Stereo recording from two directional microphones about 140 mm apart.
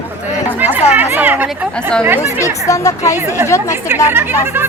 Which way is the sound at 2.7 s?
25° left (ahead or behind).